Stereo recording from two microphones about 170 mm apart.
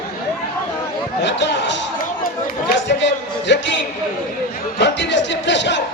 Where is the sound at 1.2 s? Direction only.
90° left.